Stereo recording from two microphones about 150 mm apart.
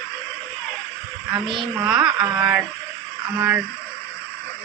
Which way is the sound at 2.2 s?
15° right (ahead or behind).